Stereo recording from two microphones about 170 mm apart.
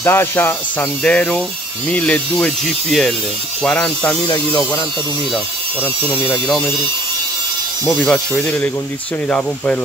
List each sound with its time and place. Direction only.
0.0 s speech: 15° left (ahead or behind)
6.0 s speech: 10° left (ahead or behind)
8.0 s speech: 5° left (ahead or behind)